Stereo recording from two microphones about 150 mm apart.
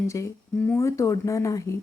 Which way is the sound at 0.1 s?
15° left (ahead or behind).